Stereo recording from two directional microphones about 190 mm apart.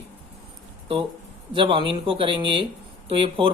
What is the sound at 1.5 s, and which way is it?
Speech, 25° right (ahead or behind).